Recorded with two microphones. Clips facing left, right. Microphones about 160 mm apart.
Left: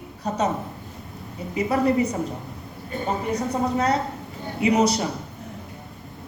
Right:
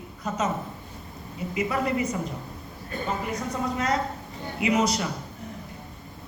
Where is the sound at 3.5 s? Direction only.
35° left (ahead or behind).